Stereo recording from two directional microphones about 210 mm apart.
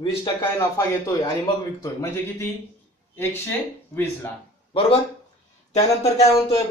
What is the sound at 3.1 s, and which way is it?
Speech, 10° left (ahead or behind).